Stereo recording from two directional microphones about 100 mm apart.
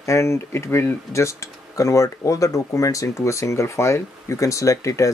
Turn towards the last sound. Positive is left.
turn(degrees=35)  # may be behind; listen again after turning